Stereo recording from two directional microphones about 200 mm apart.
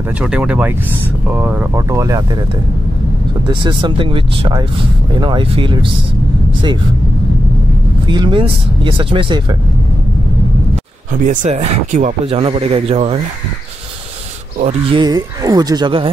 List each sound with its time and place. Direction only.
0.2 s speech: 5° right (ahead or behind)
3.4 s speech: 25° right (ahead or behind)
8.1 s speech: 25° right (ahead or behind)
11.1 s speech: 40° right (ahead or behind)
14.6 s speech: 30° right (ahead or behind)